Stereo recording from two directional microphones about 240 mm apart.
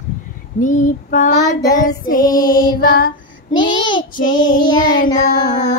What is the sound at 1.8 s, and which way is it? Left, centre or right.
Child singing, left.